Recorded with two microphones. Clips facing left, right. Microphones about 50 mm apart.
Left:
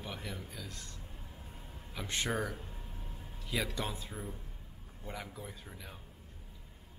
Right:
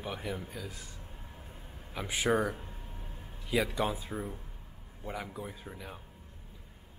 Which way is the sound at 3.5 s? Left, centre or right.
Centre.